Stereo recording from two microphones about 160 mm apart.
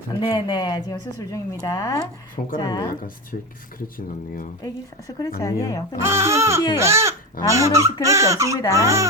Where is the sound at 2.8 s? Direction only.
65° left (ahead or behind).